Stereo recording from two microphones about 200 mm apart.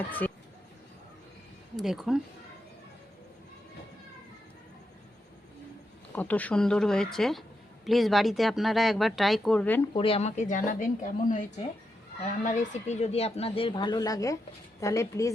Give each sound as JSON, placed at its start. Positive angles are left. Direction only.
{"t": 1.7, "sound": "speech", "side_deg": 0}
{"t": 6.1, "sound": "speech", "side_deg": 5}
{"t": 9.9, "sound": "speech", "side_deg": 25}